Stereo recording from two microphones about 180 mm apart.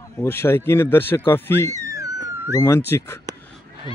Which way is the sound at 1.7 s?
20° right (ahead or behind).